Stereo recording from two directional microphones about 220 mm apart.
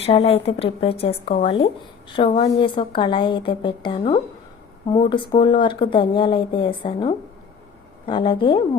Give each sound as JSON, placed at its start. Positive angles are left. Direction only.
{"t": 0.0, "sound": "a woman's voice", "side_deg": 25}